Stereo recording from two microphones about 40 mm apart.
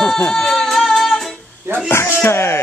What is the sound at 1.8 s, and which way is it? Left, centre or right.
Speech, left.